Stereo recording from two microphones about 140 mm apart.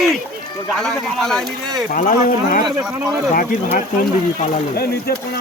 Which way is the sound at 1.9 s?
70° left (ahead or behind).